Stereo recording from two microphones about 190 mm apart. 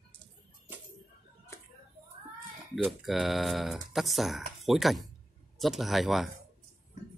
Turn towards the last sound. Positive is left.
turn(degrees=0)  # may be behind; listen again after turning